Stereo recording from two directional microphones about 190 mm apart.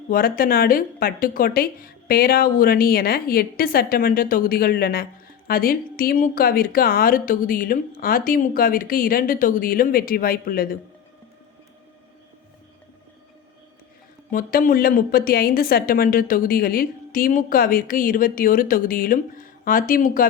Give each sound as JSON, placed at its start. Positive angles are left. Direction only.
{"t": 0.1, "sound": "a woman's voice", "side_deg": 50}
{"t": 14.3, "sound": "a woman's voice", "side_deg": 45}